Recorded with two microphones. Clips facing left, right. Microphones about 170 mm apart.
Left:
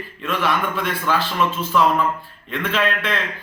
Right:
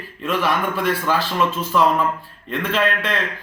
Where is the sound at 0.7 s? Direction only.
40° right (ahead or behind).